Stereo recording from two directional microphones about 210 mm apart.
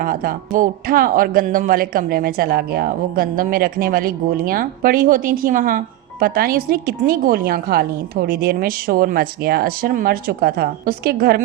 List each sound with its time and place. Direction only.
0.0 s speech: 45° right (ahead or behind)